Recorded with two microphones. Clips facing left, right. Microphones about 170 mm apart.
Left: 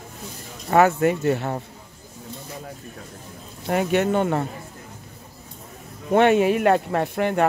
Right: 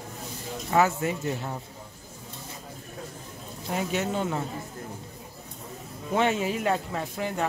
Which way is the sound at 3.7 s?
65° left (ahead or behind).